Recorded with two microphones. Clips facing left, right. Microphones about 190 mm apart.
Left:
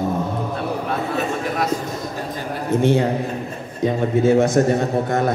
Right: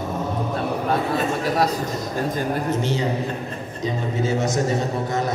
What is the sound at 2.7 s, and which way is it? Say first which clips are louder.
Mantra: left 6 dB; 55° left (ahead or behind).